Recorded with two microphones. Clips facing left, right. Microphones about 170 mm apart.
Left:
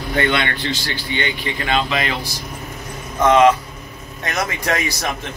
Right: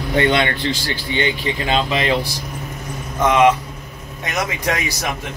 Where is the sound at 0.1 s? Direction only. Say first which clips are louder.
Right 3 dB; 25° right (ahead or behind).